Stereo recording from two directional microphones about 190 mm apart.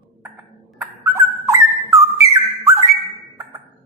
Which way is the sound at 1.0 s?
15° right (ahead or behind).